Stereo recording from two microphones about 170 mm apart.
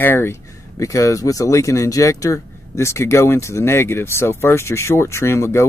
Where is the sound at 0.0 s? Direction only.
15° left (ahead or behind).